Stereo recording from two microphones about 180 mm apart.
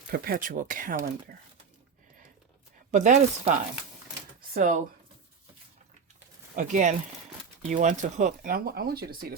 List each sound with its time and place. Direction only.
0.1 s speech: 55° right (ahead or behind)
2.9 s speech: 40° right (ahead or behind)
6.6 s speech: 45° right (ahead or behind)